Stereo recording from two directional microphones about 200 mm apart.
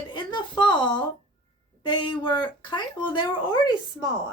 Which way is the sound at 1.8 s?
25° left (ahead or behind).